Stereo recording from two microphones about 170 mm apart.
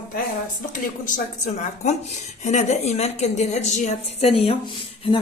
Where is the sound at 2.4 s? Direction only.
45° left (ahead or behind).